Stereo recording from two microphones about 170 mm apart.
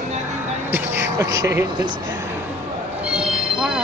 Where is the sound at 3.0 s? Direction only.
5° right (ahead or behind).